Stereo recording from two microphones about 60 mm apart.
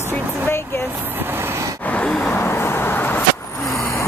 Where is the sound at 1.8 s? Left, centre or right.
Left.